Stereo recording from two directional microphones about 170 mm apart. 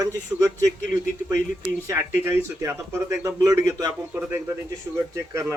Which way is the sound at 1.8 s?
15° right (ahead or behind).